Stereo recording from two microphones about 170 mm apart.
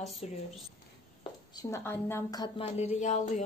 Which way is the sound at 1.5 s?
15° left (ahead or behind).